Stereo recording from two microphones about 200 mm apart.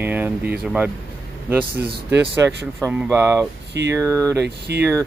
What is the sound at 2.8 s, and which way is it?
Speech, 10° right (ahead or behind).